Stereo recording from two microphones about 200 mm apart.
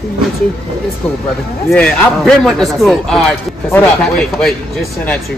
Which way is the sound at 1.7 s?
5° left (ahead or behind).